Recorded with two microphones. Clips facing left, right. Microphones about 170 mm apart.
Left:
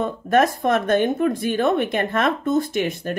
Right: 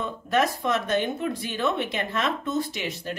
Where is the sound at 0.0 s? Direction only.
50° left (ahead or behind).